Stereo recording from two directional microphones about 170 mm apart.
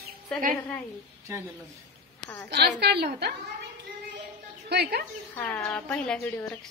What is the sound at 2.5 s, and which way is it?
Speech, 75° right (ahead or behind).